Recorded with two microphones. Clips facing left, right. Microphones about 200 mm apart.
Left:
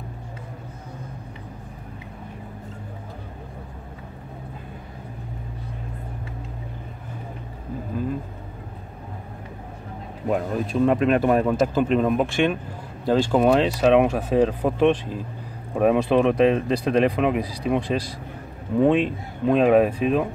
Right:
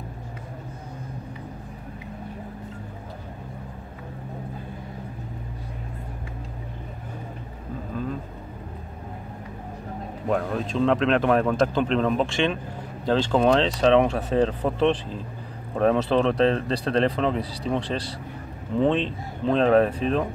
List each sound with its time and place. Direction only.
10.3 s speech: 10° left (ahead or behind)